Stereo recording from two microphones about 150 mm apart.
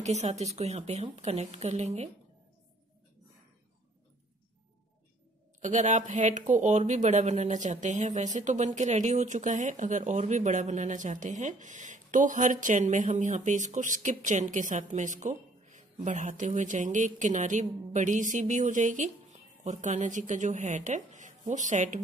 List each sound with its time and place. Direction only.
0.0 s speech: 50° right (ahead or behind)
5.6 s speech: 55° right (ahead or behind)